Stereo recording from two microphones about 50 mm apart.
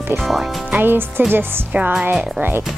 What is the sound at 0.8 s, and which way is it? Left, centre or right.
Speech, right.